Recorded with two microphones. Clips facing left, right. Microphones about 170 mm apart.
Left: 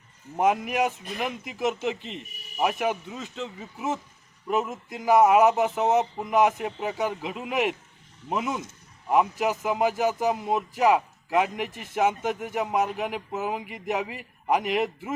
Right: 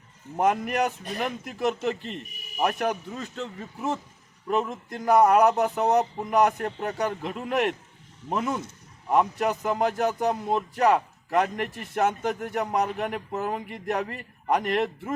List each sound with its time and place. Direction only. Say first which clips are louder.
0.3 s speech: even; 5° left (ahead or behind)